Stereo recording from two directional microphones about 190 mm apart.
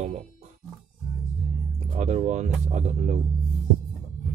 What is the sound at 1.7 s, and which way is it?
Speech, 35° right (ahead or behind).